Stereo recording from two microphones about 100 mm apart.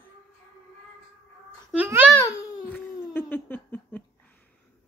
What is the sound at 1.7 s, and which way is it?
Speech, 20° right (ahead or behind).